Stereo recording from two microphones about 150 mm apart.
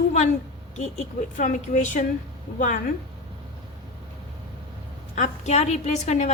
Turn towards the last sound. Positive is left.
turn(degrees=50)  # may be behind; listen again after turning